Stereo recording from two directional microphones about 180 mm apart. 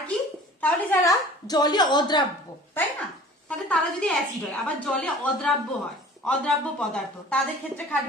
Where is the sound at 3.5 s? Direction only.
5° left (ahead or behind).